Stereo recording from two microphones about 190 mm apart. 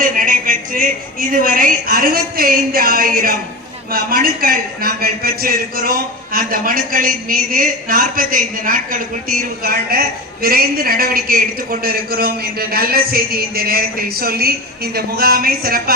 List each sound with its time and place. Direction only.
0.0 s a woman's voice: 45° right (ahead or behind)